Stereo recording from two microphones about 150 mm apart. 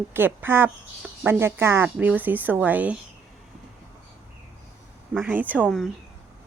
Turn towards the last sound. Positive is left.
turn(degrees=-5)  # may be behind; listen again after turning